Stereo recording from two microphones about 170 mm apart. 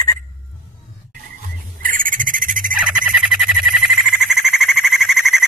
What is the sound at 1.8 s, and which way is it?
Bird, 55° right (ahead or behind).